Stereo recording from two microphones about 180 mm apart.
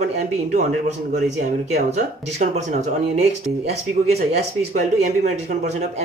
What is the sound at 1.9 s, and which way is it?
Speech, 40° right (ahead or behind).